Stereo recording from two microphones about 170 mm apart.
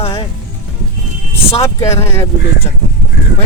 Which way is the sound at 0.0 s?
35° left (ahead or behind).